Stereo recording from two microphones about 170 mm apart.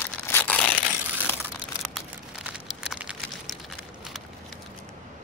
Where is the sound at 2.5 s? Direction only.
5° right (ahead or behind).